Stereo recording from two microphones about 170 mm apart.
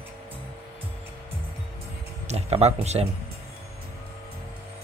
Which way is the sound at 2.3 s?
40° right (ahead or behind).